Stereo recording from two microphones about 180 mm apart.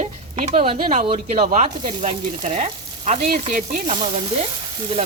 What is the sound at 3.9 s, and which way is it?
Speech, 30° right (ahead or behind).